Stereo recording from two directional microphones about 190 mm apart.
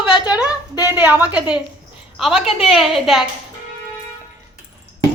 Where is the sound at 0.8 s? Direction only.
10° right (ahead or behind).